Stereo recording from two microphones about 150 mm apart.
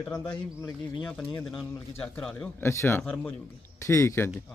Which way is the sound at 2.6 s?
20° left (ahead or behind).